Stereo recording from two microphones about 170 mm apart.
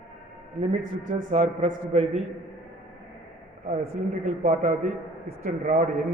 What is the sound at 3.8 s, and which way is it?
A man's voice, 50° right (ahead or behind).